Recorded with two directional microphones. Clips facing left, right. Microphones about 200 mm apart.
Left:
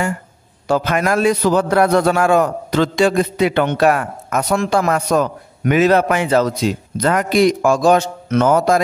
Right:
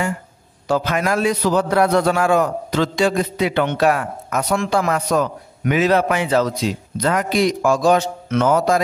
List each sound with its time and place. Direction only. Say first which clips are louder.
0.7 s a man's voice: left 2 dB; 55° left (ahead or behind)